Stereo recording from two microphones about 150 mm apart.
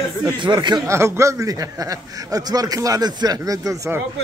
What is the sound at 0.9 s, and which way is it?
A man's voice, 20° right (ahead or behind).